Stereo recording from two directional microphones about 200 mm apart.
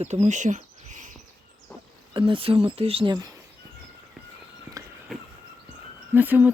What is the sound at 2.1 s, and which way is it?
Speech, 25° right (ahead or behind).